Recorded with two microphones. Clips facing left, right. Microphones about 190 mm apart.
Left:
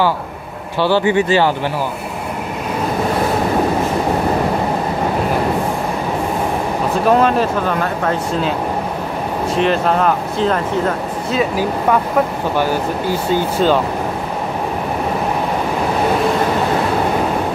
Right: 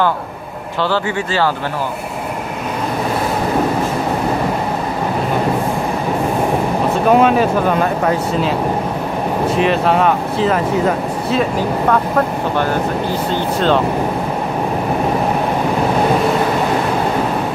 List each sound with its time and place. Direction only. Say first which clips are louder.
0.8 s speech: left 6 dB; 15° left (ahead or behind)
7.1 s speech: right 2 dB; centre (ahead or behind)
9.6 s speech: even; centre (ahead or behind)
13.3 s speech: left 2 dB; 5° left (ahead or behind)